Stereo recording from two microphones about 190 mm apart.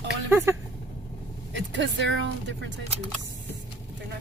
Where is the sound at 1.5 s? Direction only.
75° right (ahead or behind).